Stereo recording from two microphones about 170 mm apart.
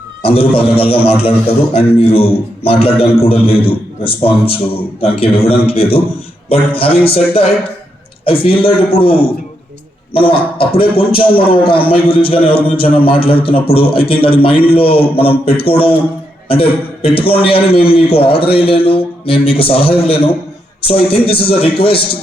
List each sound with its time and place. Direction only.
0.2 s a man's voice: 35° left (ahead or behind)